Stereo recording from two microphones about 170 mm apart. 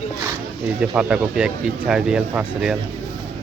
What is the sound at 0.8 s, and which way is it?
Speech, 5° right (ahead or behind).